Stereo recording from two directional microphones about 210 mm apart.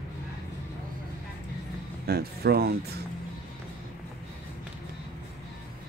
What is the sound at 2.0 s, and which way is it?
Speech, 50° right (ahead or behind).